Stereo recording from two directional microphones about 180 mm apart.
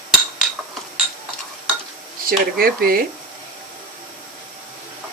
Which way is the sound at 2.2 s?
55° right (ahead or behind).